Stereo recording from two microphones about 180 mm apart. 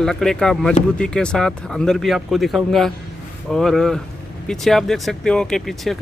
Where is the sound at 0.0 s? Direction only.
5° left (ahead or behind).